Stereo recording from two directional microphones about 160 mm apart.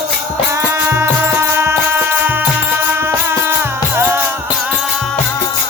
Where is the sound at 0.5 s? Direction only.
15° right (ahead or behind).